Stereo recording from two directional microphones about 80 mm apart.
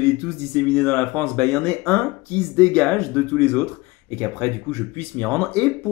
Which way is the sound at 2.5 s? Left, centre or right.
Centre.